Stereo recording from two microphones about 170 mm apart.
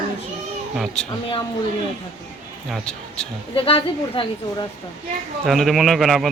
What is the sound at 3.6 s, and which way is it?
Speech, 30° left (ahead or behind).